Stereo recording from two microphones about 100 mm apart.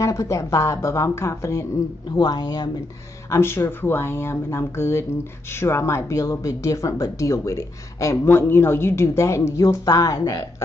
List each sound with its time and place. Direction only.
0.0 s speech: 30° left (ahead or behind)
2.0 s speech: 45° left (ahead or behind)
3.3 s speech: 25° left (ahead or behind)